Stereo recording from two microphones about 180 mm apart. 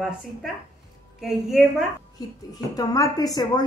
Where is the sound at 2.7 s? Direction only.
20° left (ahead or behind).